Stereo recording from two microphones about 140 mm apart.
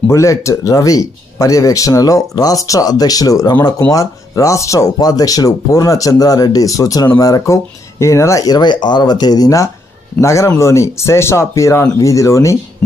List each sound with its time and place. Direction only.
0.1 s speech: 20° left (ahead or behind)